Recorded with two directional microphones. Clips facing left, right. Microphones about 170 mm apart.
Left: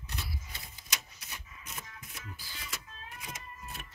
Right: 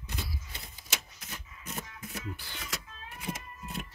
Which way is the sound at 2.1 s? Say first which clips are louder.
Right 10 dB; 65° right (ahead or behind).